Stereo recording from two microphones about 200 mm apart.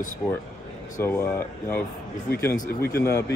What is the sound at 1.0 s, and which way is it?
Speech, 10° left (ahead or behind).